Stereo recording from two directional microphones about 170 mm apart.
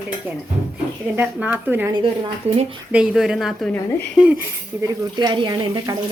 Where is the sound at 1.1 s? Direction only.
10° right (ahead or behind).